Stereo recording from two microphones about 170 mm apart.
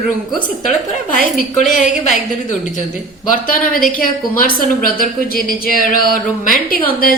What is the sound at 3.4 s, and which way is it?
A woman's voice, 55° left (ahead or behind).